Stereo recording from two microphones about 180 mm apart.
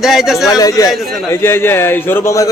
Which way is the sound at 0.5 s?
20° left (ahead or behind).